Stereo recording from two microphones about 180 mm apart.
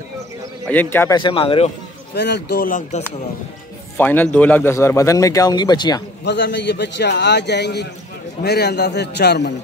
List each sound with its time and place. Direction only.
0.7 s a man's voice: 10° left (ahead or behind)
1.1 s speech: 30° left (ahead or behind)
2.1 s speech: 70° left (ahead or behind); by 3.0 s 50° left (ahead or behind)
3.9 s a man's voice: 10° left (ahead or behind)
6.2 s a man's voice: 75° left (ahead or behind)